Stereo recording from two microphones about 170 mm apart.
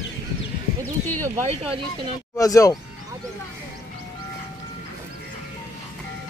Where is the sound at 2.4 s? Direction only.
20° left (ahead or behind).